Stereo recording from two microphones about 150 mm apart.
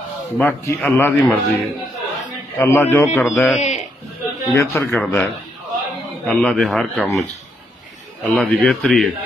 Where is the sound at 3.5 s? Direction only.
50° left (ahead or behind).